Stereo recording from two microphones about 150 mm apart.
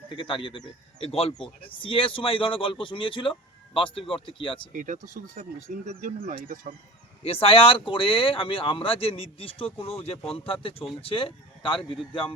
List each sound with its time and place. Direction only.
0.1 s speech: 35° left (ahead or behind)
4.7 s speech: 60° right (ahead or behind)
7.3 s speech: 40° left (ahead or behind)